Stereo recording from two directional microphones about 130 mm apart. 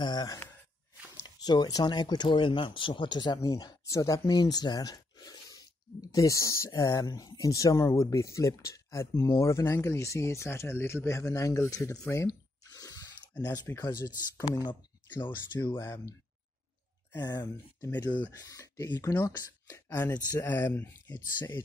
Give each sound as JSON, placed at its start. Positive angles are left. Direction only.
{"t": 0.0, "sound": "speech", "side_deg": 30}
{"t": 12.1, "sound": "a sound", "side_deg": 25}
{"t": 13.7, "sound": "speech", "side_deg": 25}
{"t": 15.7, "sound": "speech", "side_deg": 20}
{"t": 17.2, "sound": "speech", "side_deg": 30}